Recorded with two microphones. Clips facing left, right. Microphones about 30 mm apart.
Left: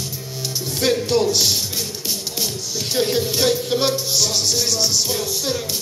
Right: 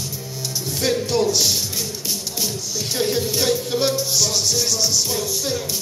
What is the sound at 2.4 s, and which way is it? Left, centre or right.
Music, centre.